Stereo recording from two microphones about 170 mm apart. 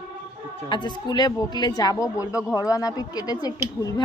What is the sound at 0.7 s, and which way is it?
A woman's voice, 25° left (ahead or behind).